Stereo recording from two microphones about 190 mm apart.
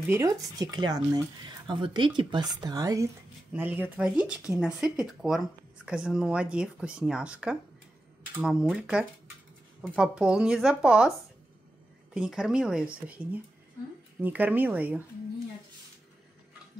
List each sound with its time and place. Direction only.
0.1 s speech: 20° right (ahead or behind)